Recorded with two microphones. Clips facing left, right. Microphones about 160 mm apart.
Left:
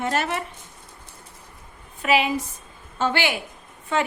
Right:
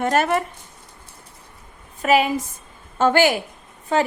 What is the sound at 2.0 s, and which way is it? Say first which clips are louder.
A woman's voice: right 3 dB; 45° right (ahead or behind).